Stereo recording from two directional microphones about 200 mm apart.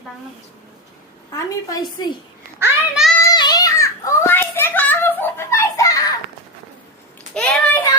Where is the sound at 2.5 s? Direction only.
5° right (ahead or behind).